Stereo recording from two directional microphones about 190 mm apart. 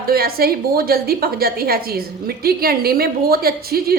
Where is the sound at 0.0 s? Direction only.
50° right (ahead or behind).